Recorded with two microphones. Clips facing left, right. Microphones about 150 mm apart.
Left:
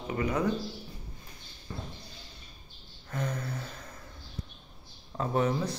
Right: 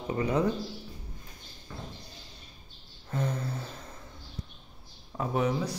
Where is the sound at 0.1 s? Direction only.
30° right (ahead or behind).